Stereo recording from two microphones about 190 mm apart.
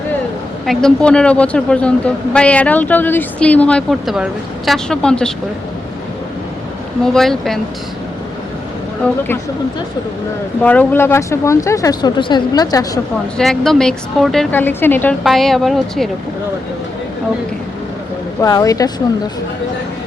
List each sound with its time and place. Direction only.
0.6 s a woman's voice: centre (ahead or behind)
7.0 s a woman's voice: centre (ahead or behind)
9.0 s a woman's voice: 5° left (ahead or behind)
10.6 s speech: 10° left (ahead or behind)
13.3 s a woman's voice: centre (ahead or behind)
18.3 s speech: 20° left (ahead or behind)